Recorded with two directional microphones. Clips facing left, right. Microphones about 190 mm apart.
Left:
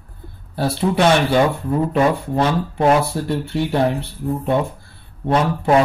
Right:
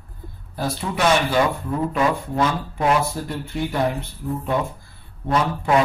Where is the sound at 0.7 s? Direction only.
30° left (ahead or behind).